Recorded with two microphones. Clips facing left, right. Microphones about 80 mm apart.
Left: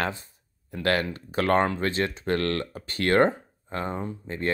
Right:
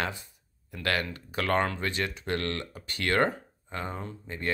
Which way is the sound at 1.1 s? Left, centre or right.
Left.